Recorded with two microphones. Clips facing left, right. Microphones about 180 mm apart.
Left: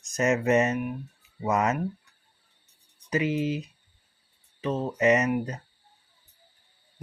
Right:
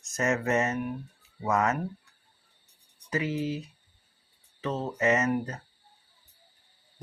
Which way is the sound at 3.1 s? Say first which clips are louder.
Left 4 dB; 20° left (ahead or behind).